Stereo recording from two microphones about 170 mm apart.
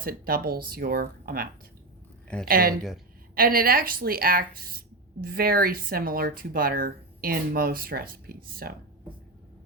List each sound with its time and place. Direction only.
0.0 s speech: 60° right (ahead or behind)